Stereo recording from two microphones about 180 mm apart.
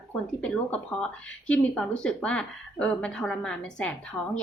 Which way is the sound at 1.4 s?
5° left (ahead or behind).